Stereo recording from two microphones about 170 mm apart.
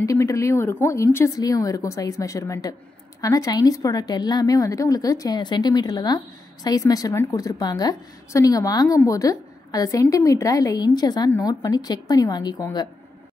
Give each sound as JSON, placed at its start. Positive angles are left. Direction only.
{"t": 0.0, "sound": "a woman's voice", "side_deg": 20}